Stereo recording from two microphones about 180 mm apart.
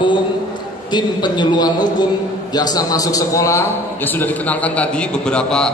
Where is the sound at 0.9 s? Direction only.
25° left (ahead or behind).